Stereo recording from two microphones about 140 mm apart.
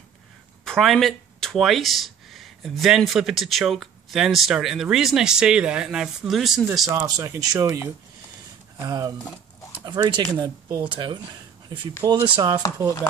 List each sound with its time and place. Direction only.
0.7 s speech: 5° left (ahead or behind)
6.9 s speech: 25° right (ahead or behind)
10.3 s speech: 30° right (ahead or behind)